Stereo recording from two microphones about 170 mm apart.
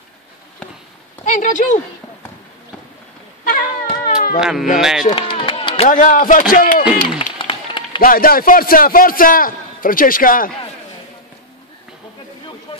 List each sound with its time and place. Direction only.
1.2 s speech: 50° left (ahead or behind)
3.4 s a sound: 55° left (ahead or behind)
4.4 s speech: 5° right (ahead or behind)
5.1 s chop: 30° left (ahead or behind)
5.9 s a man's voice: 50° left (ahead or behind)
7.3 s run: 30° left (ahead or behind)
8.0 s a man's voice: 55° left (ahead or behind)